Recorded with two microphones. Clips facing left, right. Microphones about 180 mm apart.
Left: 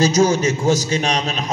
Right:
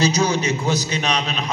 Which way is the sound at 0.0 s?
45° left (ahead or behind).